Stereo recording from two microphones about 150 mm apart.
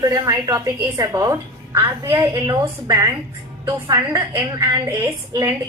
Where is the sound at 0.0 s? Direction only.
25° right (ahead or behind).